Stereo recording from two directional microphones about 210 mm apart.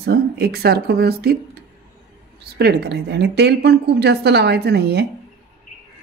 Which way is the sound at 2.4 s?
50° right (ahead or behind).